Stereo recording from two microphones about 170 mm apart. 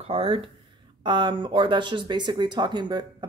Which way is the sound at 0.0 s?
35° right (ahead or behind).